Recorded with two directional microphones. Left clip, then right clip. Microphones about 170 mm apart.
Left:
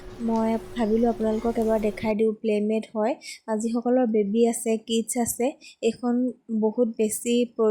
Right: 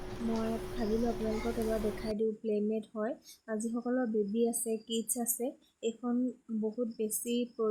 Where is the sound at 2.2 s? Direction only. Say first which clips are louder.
Left 8 dB; 25° left (ahead or behind).